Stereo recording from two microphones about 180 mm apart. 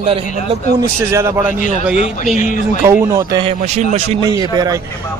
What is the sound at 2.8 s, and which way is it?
Speech, 15° right (ahead or behind).